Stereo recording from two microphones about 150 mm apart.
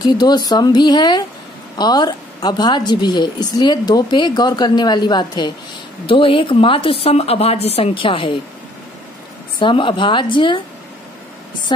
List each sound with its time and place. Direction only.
0.0 s a woman's voice: 25° left (ahead or behind)
9.6 s a woman's voice: 35° left (ahead or behind)